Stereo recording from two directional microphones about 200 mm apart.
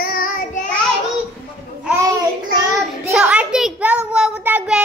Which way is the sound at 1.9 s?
15° right (ahead or behind).